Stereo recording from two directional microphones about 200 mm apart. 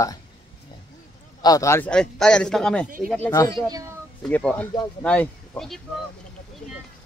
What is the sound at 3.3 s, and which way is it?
Speech, 20° left (ahead or behind).